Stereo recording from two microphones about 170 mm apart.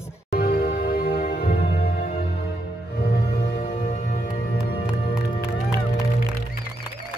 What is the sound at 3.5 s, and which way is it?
Music, 65° left (ahead or behind).